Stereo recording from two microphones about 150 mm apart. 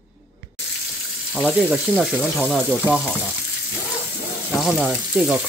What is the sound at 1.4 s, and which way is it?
Speech, 10° right (ahead or behind).